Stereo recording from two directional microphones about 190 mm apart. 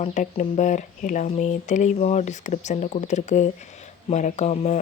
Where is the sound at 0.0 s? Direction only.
40° left (ahead or behind).